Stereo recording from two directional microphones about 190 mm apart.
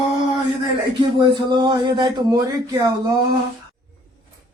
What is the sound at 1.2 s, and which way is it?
Speech, 25° right (ahead or behind).